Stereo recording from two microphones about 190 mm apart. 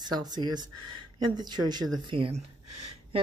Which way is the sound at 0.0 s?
20° right (ahead or behind).